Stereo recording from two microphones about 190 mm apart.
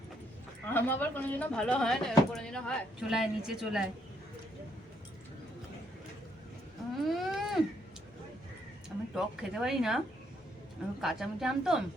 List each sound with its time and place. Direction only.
0.7 s speech: 10° left (ahead or behind)
7.0 s a sound: centre (ahead or behind)
9.1 s speech: 5° right (ahead or behind)
11.0 s speech: centre (ahead or behind)